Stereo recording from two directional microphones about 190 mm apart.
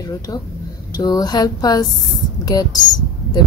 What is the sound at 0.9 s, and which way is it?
Speech, 20° left (ahead or behind).